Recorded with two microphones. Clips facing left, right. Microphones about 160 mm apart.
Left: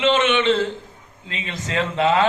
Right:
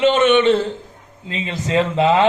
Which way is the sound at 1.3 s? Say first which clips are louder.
Right 7 dB; 30° right (ahead or behind).